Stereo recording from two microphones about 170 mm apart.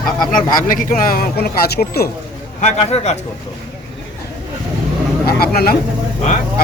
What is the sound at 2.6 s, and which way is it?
Speech, 45° left (ahead or behind).